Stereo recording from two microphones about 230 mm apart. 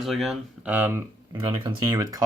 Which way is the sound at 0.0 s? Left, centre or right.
Centre.